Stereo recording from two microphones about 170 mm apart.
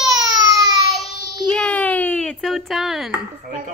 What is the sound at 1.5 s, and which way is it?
Speech, 10° left (ahead or behind).